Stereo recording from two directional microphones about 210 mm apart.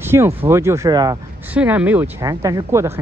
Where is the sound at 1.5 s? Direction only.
5° right (ahead or behind).